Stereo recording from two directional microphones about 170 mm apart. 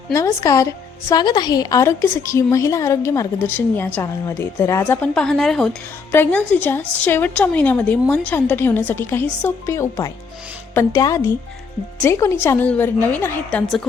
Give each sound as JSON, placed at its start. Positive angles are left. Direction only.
{"t": 0.1, "sound": "a woman's voice", "side_deg": 20}